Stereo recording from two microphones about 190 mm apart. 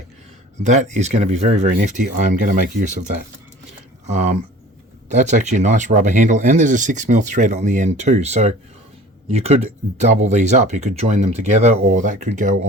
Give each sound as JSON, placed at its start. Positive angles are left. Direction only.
{"t": 0.6, "sound": "speech", "side_deg": -40}
{"t": 3.7, "sound": "a sound", "side_deg": -35}
{"t": 5.1, "sound": "speech", "side_deg": -40}